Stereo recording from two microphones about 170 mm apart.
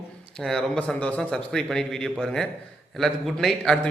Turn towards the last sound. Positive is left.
turn(degrees=5)  # may be behind; listen again after turning